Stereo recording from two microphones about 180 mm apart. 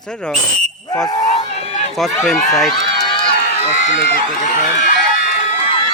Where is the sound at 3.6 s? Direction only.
40° left (ahead or behind).